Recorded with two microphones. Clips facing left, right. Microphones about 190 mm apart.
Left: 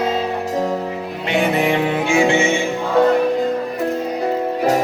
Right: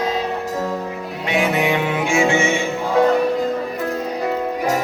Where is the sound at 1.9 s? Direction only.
30° left (ahead or behind).